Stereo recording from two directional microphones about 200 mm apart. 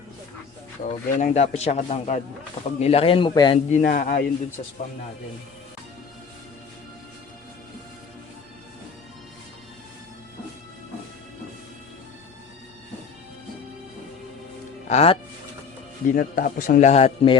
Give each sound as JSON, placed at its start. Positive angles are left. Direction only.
{"t": 1.2, "sound": "a man's voice", "side_deg": 35}
{"t": 3.7, "sound": "speech", "side_deg": 40}
{"t": 14.8, "sound": "speech", "side_deg": 30}
{"t": 16.0, "sound": "speech", "side_deg": 45}